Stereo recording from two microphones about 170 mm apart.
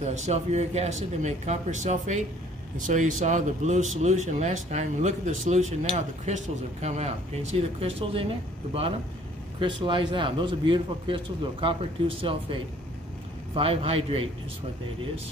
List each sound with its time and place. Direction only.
0.0 s a man's voice: 40° right (ahead or behind)
9.6 s a man's voice: 30° right (ahead or behind)
13.6 s a man's voice: 35° right (ahead or behind)